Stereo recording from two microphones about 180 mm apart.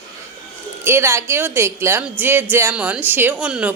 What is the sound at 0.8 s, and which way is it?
A woman's voice, 15° right (ahead or behind).